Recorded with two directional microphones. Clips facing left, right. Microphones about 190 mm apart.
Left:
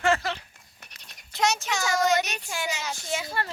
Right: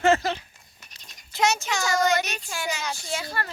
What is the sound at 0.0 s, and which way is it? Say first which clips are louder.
Speech: right 4 dB; 20° right (ahead or behind).